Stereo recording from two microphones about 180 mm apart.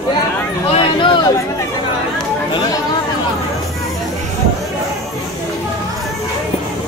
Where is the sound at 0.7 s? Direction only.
30° left (ahead or behind).